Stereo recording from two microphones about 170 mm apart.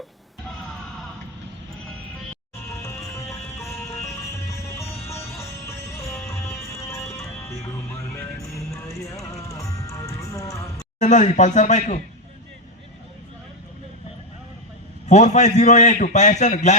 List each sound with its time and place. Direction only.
2.8 s music: 15° left (ahead or behind)
9.0 s music: 20° left (ahead or behind)
11.0 s a man's voice: 45° left (ahead or behind)
15.0 s a man's voice: 45° left (ahead or behind)